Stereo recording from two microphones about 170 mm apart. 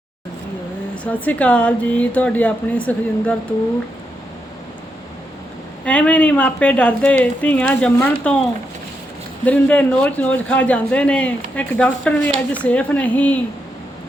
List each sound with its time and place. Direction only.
1.0 s speech: 10° left (ahead or behind)
5.8 s speech: 5° left (ahead or behind)
9.4 s speech: 10° left (ahead or behind)